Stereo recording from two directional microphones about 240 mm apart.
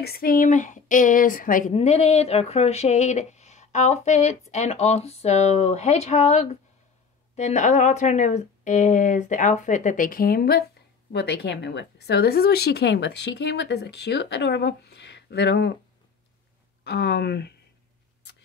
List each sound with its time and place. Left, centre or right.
0.0 s a woman's voice: left
16.8 s speech: left